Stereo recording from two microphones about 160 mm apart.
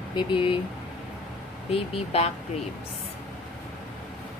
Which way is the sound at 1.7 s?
40° left (ahead or behind).